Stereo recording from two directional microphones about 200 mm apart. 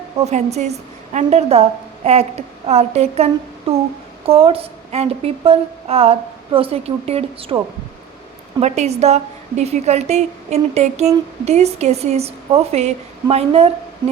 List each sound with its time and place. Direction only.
0.3 s a woman's voice: 35° right (ahead or behind)
2.6 s a woman's voice: 30° right (ahead or behind)
8.6 s a woman's voice: 35° right (ahead or behind)